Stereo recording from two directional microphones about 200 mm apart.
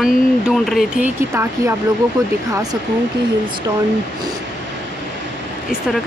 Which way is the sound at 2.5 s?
20° right (ahead or behind).